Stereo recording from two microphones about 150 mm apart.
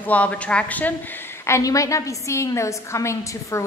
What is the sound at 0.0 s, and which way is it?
A woman's voice, 10° left (ahead or behind).